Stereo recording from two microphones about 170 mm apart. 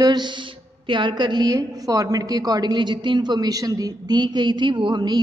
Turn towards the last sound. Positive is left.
turn(degrees=-25)  # may be behind; listen again after turning